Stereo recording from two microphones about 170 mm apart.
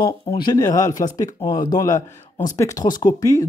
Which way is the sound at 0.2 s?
30° left (ahead or behind).